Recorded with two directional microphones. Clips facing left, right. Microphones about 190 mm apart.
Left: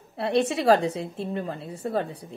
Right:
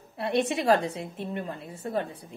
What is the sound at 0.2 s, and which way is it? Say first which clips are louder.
A woman's voice: left 3 dB; 35° left (ahead or behind).